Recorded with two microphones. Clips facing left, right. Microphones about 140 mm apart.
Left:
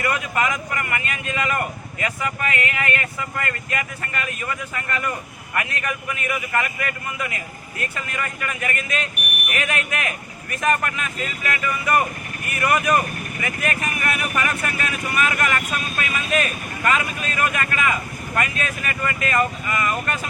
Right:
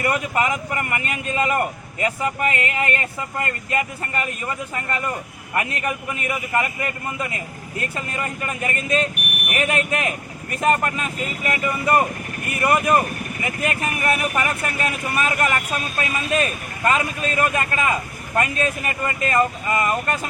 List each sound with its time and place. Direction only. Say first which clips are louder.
0.0 s a man's voice: right 1 dB; 30° right (ahead or behind)